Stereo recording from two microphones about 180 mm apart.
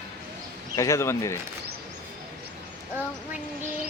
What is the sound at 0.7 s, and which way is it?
Speech, 15° left (ahead or behind).